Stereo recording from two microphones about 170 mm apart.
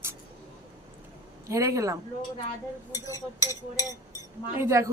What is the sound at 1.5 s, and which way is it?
Speech, 20° right (ahead or behind).